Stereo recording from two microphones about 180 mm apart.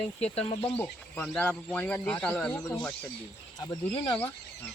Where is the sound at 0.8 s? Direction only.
10° left (ahead or behind).